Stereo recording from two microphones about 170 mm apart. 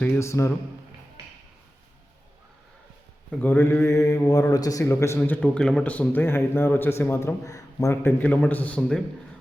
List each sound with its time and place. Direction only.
0.0 s a man's voice: 15° left (ahead or behind)
3.3 s a man's voice: 10° left (ahead or behind)